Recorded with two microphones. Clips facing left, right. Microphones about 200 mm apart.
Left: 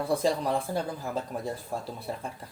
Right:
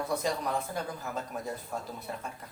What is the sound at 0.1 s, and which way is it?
Speech, 30° left (ahead or behind).